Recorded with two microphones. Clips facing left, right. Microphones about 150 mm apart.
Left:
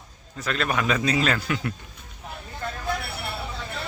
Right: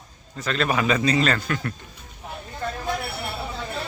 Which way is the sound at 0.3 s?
Centre (ahead or behind).